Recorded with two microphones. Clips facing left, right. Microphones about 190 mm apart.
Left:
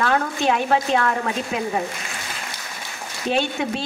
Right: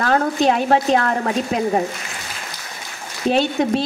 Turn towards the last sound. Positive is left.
turn(degrees=-40)  # may be behind; listen again after turning